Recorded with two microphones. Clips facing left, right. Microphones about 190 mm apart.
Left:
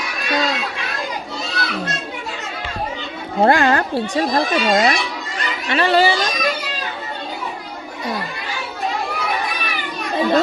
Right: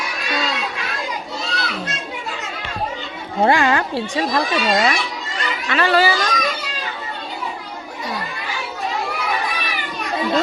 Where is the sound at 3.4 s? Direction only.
50° left (ahead or behind); by 6.2 s 25° left (ahead or behind).